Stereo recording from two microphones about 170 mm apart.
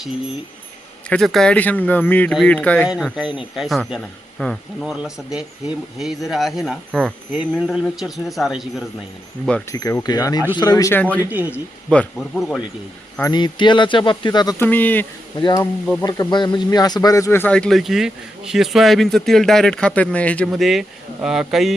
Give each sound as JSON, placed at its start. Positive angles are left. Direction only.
{"t": 1.1, "sound": "speech", "side_deg": 0}
{"t": 2.8, "sound": "a man's voice", "side_deg": -5}
{"t": 9.7, "sound": "speech", "side_deg": 20}
{"t": 11.2, "sound": "speech", "side_deg": -10}
{"t": 11.9, "sound": "a man's voice", "side_deg": 5}
{"t": 13.3, "sound": "speech", "side_deg": 25}
{"t": 14.6, "sound": "speech", "side_deg": 10}
{"t": 15.4, "sound": "speech", "side_deg": 25}
{"t": 15.6, "sound": "a man's voice", "side_deg": 15}